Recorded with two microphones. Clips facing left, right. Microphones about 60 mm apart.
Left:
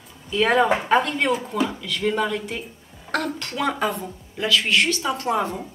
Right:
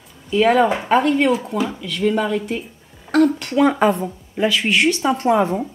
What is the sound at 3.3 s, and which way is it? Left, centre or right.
A woman's voice, centre.